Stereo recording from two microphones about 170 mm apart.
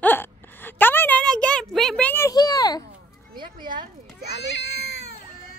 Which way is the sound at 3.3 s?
25° right (ahead or behind).